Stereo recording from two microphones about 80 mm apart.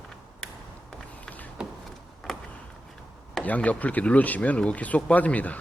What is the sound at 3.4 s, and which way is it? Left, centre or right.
Speech, centre.